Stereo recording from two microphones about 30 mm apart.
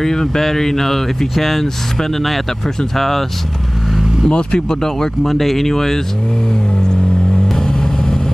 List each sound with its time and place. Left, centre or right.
0.0 s speech: centre
3.0 s speech: centre
4.3 s speech: left
4.6 s speech: centre
5.2 s speech: centre
7.4 s vehicle: centre